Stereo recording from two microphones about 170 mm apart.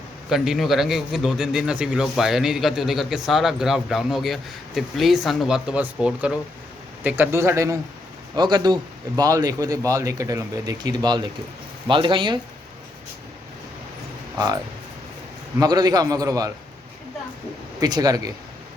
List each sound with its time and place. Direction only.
0.3 s a man's voice: 5° right (ahead or behind); by 12.4 s 30° right (ahead or behind)
14.3 s a man's voice: 20° right (ahead or behind)
17.7 s a man's voice: 25° right (ahead or behind)